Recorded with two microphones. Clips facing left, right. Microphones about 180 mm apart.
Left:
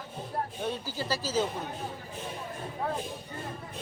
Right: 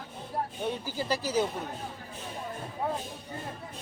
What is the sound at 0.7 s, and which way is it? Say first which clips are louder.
Speech: right 2 dB; 15° right (ahead or behind).